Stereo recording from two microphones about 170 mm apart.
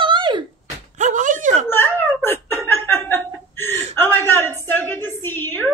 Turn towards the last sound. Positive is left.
turn(degrees=10)  # may be behind; listen again after turning